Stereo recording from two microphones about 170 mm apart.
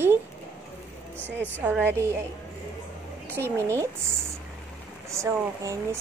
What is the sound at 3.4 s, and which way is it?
Speech, 15° right (ahead or behind).